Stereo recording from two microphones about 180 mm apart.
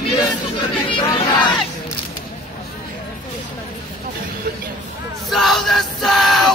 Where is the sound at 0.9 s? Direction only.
30° left (ahead or behind).